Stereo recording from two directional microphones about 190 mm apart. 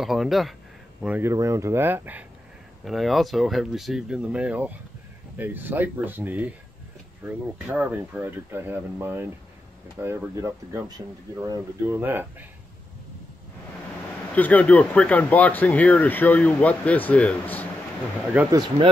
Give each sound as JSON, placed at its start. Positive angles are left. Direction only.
{"t": 0.0, "sound": "speech", "side_deg": 0}
{"t": 1.0, "sound": "speech", "side_deg": -10}
{"t": 14.3, "sound": "speech", "side_deg": 10}
{"t": 18.5, "sound": "speech", "side_deg": -20}